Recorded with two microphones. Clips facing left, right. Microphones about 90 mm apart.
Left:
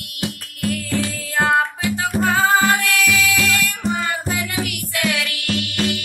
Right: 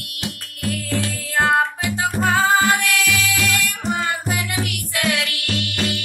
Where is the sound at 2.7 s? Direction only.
15° right (ahead or behind).